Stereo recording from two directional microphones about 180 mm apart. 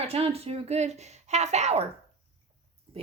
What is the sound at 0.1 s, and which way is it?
A woman's voice, 35° right (ahead or behind).